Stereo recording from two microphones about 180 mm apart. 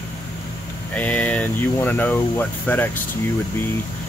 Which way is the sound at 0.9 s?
10° left (ahead or behind).